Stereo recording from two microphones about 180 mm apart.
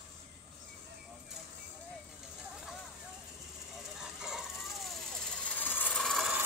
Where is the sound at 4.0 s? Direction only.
5° right (ahead or behind).